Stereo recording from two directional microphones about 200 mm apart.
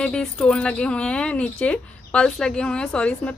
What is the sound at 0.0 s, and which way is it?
Speech, 5° left (ahead or behind).